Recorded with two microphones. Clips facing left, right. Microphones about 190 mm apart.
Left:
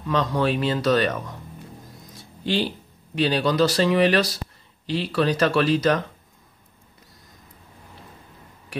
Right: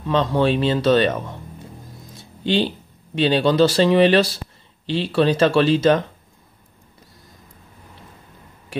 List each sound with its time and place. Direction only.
0.0 s a man's voice: 25° right (ahead or behind)
2.4 s a man's voice: 25° right (ahead or behind)